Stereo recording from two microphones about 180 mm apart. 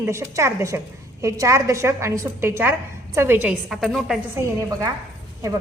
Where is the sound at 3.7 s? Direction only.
Centre (ahead or behind).